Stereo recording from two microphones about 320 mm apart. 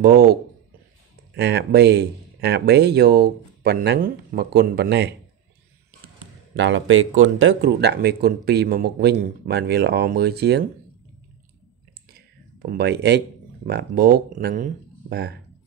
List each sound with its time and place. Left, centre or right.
0.0 s speech: right
6.5 s speech: right
12.7 s speech: right